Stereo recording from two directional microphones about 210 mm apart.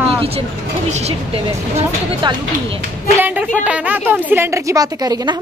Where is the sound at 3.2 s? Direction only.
5° right (ahead or behind).